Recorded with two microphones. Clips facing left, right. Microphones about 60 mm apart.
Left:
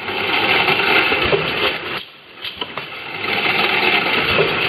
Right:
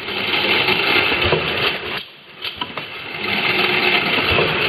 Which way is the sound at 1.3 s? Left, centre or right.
Centre.